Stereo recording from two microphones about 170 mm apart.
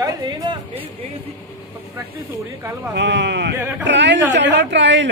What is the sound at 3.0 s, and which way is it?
Speech, 90° right.